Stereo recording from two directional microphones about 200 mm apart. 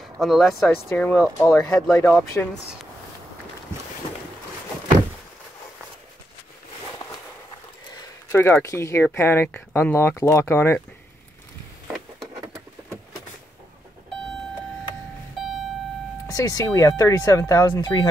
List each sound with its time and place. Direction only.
0.0 s speech: centre (ahead or behind)
8.3 s speech: 10° left (ahead or behind)
15.4 s a sound: centre (ahead or behind)
16.3 s speech: 15° left (ahead or behind)